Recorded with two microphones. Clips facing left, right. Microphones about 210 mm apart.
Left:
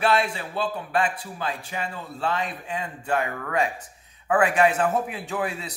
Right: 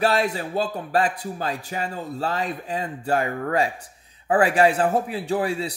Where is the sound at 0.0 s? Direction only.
40° right (ahead or behind).